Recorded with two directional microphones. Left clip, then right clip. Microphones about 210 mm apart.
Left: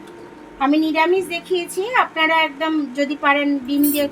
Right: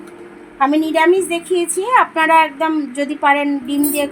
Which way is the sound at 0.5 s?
45° right (ahead or behind).